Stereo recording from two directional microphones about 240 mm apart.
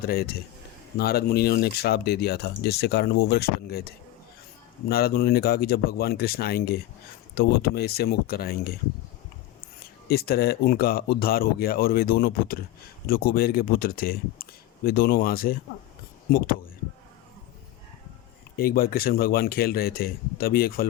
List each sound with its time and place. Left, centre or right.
0.0 s speech: left
10.1 s speech: left
18.5 s speech: left